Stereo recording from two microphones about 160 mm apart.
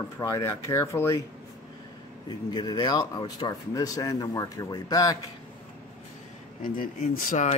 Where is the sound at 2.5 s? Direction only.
25° left (ahead or behind).